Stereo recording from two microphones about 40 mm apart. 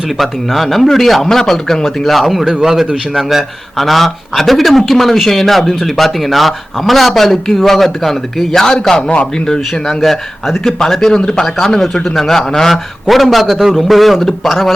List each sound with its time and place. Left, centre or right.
0.2 s speech: centre
2.5 s a man's voice: centre
3.8 s speech: centre
9.0 s a man's voice: left
9.5 s a man's voice: centre
11.2 s a man's voice: left
11.4 s speech: centre
11.7 s a man's voice: centre
13.8 s speech: centre